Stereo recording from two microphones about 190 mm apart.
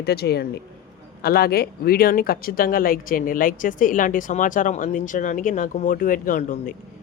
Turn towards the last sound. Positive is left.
turn(degrees=40)  # may be behind; listen again after turning